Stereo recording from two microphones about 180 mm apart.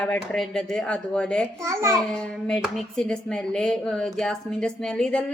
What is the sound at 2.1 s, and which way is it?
Speech, 5° left (ahead or behind).